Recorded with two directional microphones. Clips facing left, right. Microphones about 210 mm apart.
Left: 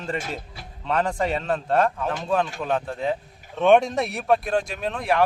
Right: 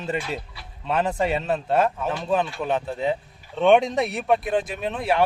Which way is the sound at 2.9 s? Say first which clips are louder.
Right 1 dB; 25° right (ahead or behind).